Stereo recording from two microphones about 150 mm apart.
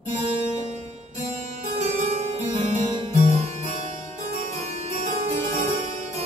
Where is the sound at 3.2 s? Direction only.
50° right (ahead or behind).